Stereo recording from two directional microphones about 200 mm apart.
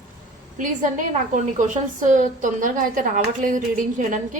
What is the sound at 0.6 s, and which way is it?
A woman's voice, 40° right (ahead or behind).